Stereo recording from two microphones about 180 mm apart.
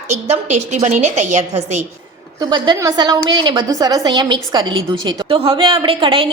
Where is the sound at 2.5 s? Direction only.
20° right (ahead or behind).